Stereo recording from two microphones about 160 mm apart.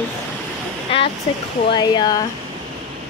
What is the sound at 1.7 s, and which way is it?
Speech, 25° left (ahead or behind).